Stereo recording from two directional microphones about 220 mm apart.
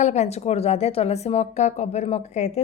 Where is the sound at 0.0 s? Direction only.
30° left (ahead or behind).